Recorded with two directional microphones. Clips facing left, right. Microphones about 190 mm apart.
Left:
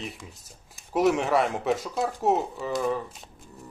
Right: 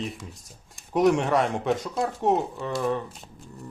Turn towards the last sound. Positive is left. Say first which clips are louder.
# right 1 dB
turn(degrees=0)  # may be behind; listen again after turning